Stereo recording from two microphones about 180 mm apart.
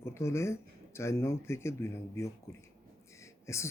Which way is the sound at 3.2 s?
15° left (ahead or behind).